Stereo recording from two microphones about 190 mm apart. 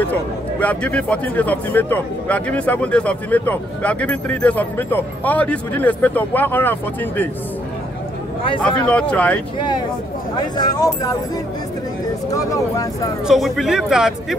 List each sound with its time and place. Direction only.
0.6 s speech: 10° left (ahead or behind)
8.6 s speech: 5° left (ahead or behind)
10.6 s speech: 20° left (ahead or behind)
12.3 s speech: 15° left (ahead or behind)
13.3 s speech: centre (ahead or behind)